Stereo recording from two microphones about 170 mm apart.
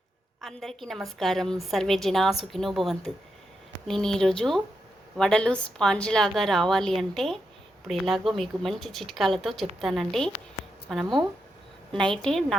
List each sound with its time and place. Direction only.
0.4 s a woman's voice: centre (ahead or behind)
11.0 s speech: 25° right (ahead or behind)
11.9 s a woman's voice: 5° left (ahead or behind)